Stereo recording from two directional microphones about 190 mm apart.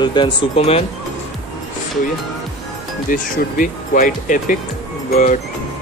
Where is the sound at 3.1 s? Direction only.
45° left (ahead or behind).